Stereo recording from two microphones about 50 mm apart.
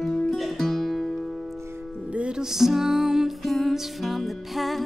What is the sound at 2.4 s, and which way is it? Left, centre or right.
Music, centre.